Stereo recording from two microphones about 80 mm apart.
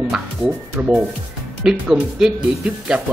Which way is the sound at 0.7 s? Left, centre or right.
Centre.